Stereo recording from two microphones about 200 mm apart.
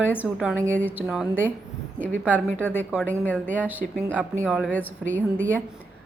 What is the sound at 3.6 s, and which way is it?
Speech, 10° right (ahead or behind).